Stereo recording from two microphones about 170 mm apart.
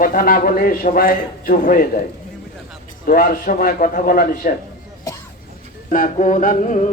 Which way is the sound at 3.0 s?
55° left (ahead or behind).